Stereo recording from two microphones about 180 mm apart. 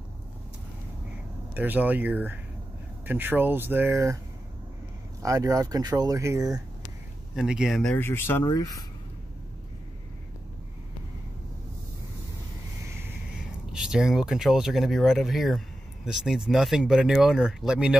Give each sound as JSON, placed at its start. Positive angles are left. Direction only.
{"t": 1.5, "sound": "speech", "side_deg": -10}
{"t": 5.2, "sound": "speech", "side_deg": -20}
{"t": 7.3, "sound": "speech", "side_deg": -5}
{"t": 13.7, "sound": "speech", "side_deg": -5}